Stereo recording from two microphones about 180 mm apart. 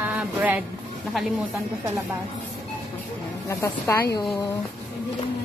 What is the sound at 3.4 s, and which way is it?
Speech, 15° left (ahead or behind).